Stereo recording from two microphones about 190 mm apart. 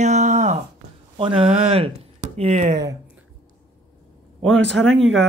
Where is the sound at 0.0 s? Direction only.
40° right (ahead or behind).